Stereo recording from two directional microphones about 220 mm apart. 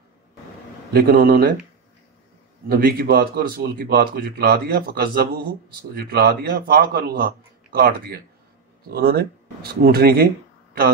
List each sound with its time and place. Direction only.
0.9 s speech: 45° right (ahead or behind)
2.7 s speech: 45° right (ahead or behind)